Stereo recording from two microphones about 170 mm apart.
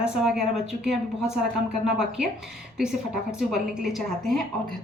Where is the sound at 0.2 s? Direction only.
5° right (ahead or behind).